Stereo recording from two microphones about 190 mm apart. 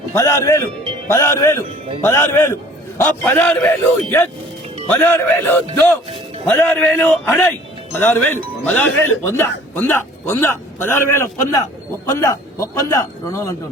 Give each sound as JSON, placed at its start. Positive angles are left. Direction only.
{"t": 0.1, "sound": "a man's voice", "side_deg": 15}